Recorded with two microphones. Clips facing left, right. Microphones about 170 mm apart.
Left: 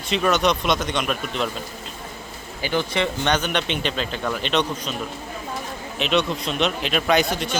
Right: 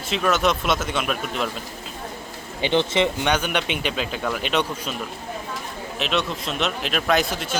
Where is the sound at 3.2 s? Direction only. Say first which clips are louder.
Even; 10° right (ahead or behind).